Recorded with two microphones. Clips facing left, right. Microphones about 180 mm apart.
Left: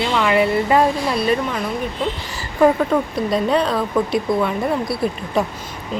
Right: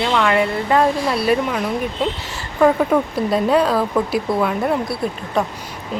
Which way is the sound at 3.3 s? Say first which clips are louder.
Right 2 dB; 5° right (ahead or behind).